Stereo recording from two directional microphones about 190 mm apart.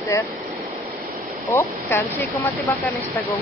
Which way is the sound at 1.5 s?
10° left (ahead or behind).